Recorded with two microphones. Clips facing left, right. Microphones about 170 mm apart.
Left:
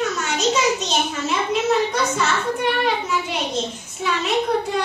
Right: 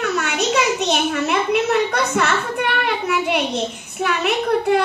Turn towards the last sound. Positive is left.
turn(degrees=-65)  # may be behind; listen again after turning